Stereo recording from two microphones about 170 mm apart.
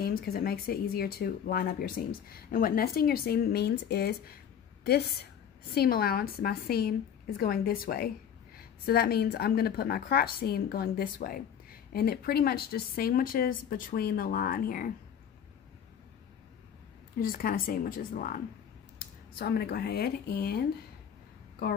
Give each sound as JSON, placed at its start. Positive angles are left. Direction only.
{"t": 0.0, "sound": "speech", "side_deg": 65}
{"t": 5.8, "sound": "speech", "side_deg": 60}
{"t": 17.2, "sound": "speech", "side_deg": 60}
{"t": 18.9, "sound": "speech", "side_deg": 65}